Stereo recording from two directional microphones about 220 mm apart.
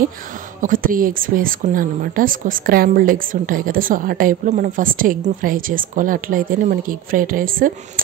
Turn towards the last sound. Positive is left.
turn(degrees=-40)  # may be behind; listen again after turning